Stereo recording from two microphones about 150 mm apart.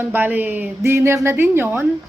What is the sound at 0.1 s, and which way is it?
A woman's voice, 10° right (ahead or behind).